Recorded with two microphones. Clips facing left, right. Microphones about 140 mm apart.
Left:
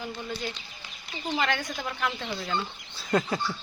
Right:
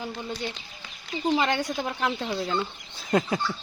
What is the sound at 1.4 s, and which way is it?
Speech, 25° right (ahead or behind).